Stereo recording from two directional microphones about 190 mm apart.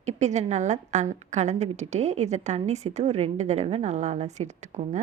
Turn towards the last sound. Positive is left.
turn(degrees=-40)  # may be behind; listen again after turning